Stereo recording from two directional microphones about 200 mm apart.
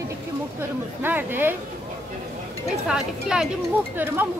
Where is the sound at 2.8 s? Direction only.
Centre (ahead or behind).